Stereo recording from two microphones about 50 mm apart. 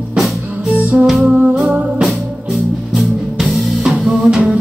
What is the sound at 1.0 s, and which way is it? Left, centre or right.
Music, centre.